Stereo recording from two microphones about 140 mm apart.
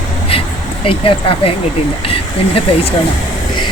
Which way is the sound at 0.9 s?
40° left (ahead or behind).